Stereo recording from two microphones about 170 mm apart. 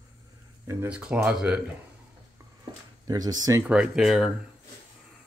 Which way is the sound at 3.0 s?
20° right (ahead or behind).